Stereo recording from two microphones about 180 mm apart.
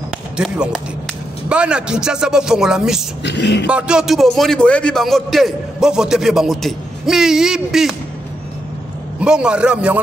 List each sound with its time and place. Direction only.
0.4 s a man's voice: 5° right (ahead or behind)
3.3 s speech: 70° left (ahead or behind)
3.6 s a man's voice: 5° right (ahead or behind)
9.2 s a man's voice: 5° right (ahead or behind)